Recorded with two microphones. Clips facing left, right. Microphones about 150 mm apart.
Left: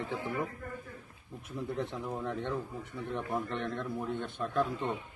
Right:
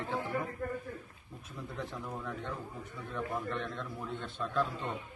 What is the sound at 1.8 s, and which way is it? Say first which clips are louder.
A man's voice: left 2 dB; 25° left (ahead or behind).